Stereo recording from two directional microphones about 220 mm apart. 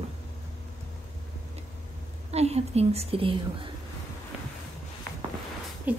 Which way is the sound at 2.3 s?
30° right (ahead or behind).